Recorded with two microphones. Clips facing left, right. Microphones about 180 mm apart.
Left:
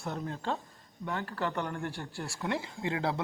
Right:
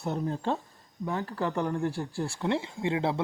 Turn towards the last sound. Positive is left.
turn(degrees=-25)  # may be behind; listen again after turning